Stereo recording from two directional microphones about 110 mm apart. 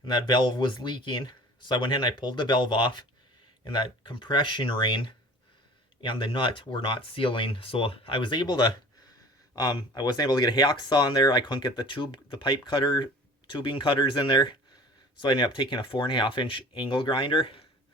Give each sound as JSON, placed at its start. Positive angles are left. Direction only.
{"t": 0.0, "sound": "speech", "side_deg": 45}